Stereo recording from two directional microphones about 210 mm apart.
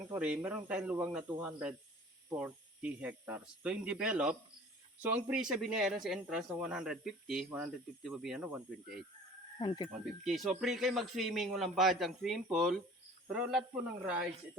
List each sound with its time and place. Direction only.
0.1 s a man's voice: 10° right (ahead or behind)
9.6 s speech: 20° left (ahead or behind)
10.2 s a man's voice: centre (ahead or behind)